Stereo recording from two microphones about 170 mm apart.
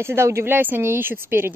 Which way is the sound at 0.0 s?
15° right (ahead or behind).